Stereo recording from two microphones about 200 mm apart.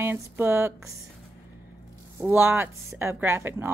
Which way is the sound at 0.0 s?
10° right (ahead or behind).